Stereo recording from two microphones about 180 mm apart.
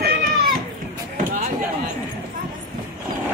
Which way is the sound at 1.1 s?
45° right (ahead or behind).